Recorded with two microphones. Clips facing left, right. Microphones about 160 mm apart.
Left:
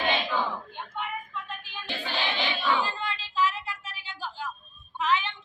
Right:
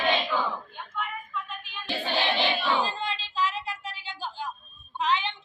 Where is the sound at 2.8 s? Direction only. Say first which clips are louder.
Right 2 dB; 20° right (ahead or behind).